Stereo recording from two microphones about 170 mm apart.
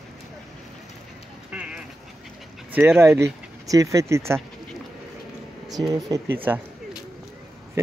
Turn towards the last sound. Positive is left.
turn(degrees=-10)  # may be behind; listen again after turning